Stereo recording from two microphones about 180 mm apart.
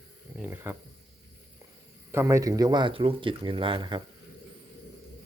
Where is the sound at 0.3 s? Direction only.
10° right (ahead or behind).